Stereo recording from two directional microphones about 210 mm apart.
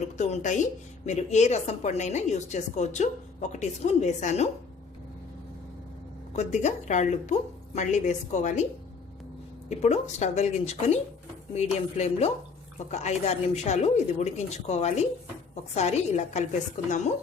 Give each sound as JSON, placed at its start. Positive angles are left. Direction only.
{"t": 0.2, "sound": "a woman's voice", "side_deg": 35}
{"t": 6.3, "sound": "a woman's voice", "side_deg": 35}
{"t": 9.6, "sound": "a woman's voice", "side_deg": 30}